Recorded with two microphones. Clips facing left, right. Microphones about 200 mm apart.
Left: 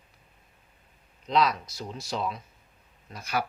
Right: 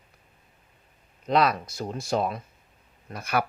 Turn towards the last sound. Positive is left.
turn(degrees=-55)  # may be behind; listen again after turning